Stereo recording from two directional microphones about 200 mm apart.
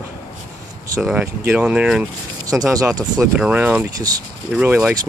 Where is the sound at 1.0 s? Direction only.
5° right (ahead or behind).